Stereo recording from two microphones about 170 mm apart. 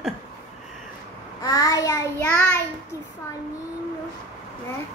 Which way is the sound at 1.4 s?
20° left (ahead or behind).